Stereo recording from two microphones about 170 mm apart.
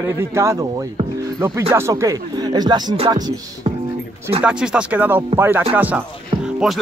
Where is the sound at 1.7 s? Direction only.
15° right (ahead or behind).